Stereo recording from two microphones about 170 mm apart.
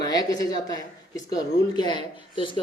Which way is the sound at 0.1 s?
20° left (ahead or behind).